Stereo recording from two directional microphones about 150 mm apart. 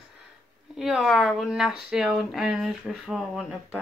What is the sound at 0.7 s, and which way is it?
Speech, 5° right (ahead or behind).